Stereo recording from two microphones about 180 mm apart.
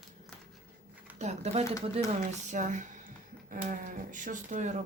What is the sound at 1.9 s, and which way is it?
Speech, 40° right (ahead or behind).